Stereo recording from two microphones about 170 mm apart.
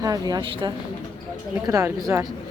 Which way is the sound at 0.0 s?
20° right (ahead or behind).